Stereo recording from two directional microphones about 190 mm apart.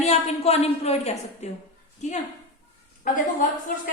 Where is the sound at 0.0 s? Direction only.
35° left (ahead or behind).